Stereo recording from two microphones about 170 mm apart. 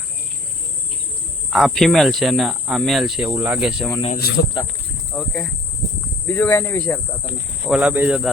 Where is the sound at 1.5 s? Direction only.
Centre (ahead or behind).